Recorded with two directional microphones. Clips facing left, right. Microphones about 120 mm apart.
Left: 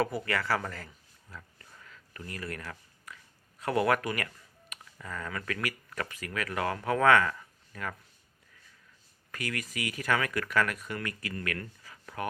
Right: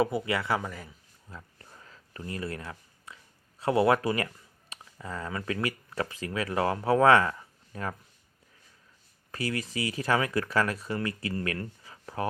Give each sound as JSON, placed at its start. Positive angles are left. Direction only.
{"t": 0.0, "sound": "speech", "side_deg": -20}
{"t": 0.6, "sound": "speech", "side_deg": -10}
{"t": 1.3, "sound": "a sound", "side_deg": -30}
{"t": 3.6, "sound": "speech", "side_deg": -25}
{"t": 9.3, "sound": "speech", "side_deg": -30}